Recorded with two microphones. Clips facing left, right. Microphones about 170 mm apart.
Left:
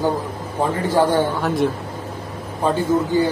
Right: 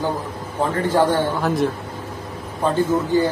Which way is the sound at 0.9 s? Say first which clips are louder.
Left 1 dB; 10° left (ahead or behind).